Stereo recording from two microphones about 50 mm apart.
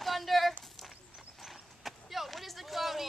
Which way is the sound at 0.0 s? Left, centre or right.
Centre.